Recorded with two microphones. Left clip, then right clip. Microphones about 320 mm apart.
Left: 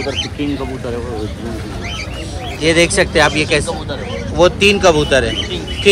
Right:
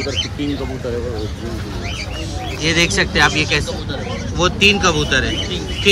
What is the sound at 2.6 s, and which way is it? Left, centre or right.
A man's voice, centre.